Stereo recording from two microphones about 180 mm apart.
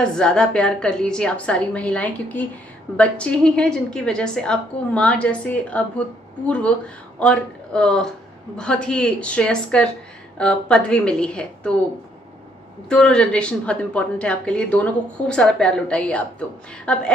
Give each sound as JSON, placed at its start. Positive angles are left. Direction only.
{"t": 0.0, "sound": "a woman's voice", "side_deg": 5}
{"t": 12.9, "sound": "a woman's voice", "side_deg": 5}